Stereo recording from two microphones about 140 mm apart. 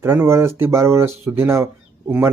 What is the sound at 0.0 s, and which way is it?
Speech, 20° right (ahead or behind).